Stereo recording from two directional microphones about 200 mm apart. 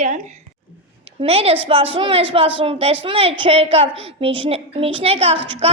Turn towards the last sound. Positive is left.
turn(degrees=-30)  # may be behind; listen again after turning